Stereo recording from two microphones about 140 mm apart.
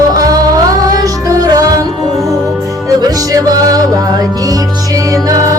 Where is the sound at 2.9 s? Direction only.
25° right (ahead or behind).